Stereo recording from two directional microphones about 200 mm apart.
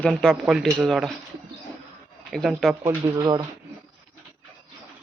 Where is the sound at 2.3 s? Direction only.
Centre (ahead or behind).